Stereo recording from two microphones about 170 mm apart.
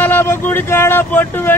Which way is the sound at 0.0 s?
15° left (ahead or behind).